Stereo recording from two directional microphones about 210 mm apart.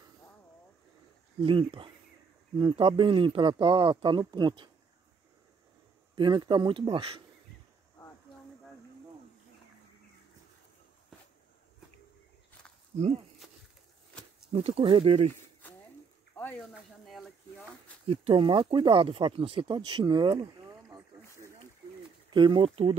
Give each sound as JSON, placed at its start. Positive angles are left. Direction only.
{"t": 1.4, "sound": "speech", "side_deg": -25}
{"t": 6.1, "sound": "speech", "side_deg": -20}
{"t": 12.9, "sound": "speech", "side_deg": -35}
{"t": 14.5, "sound": "speech", "side_deg": -25}
{"t": 16.3, "sound": "a sound", "side_deg": 5}
{"t": 18.0, "sound": "speech", "side_deg": -25}
{"t": 19.9, "sound": "a sound", "side_deg": -20}
{"t": 22.3, "sound": "speech", "side_deg": -20}